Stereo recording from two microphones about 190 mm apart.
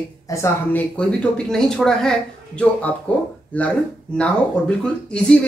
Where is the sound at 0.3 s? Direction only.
10° left (ahead or behind).